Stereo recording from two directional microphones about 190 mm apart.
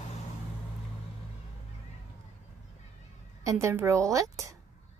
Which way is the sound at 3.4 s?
15° right (ahead or behind).